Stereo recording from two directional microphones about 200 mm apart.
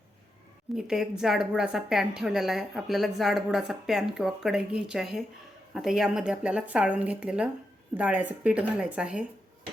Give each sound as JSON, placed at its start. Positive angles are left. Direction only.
{"t": 0.8, "sound": "a woman's voice", "side_deg": -5}